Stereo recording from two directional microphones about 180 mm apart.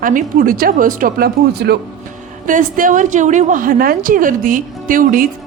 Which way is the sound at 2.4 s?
45° right (ahead or behind).